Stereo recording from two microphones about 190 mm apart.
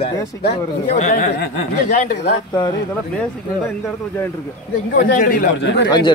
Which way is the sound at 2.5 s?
20° left (ahead or behind).